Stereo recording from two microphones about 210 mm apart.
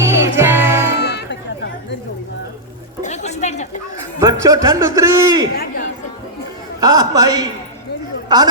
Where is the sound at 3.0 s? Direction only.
35° left (ahead or behind).